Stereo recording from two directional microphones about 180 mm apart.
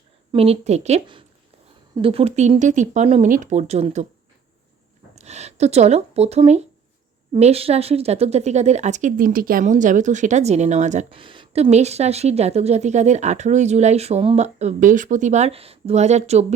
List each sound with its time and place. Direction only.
0.3 s a woman's voice: 35° right (ahead or behind)
5.1 s a woman's voice: 40° right (ahead or behind)
11.2 s a woman's voice: 30° right (ahead or behind)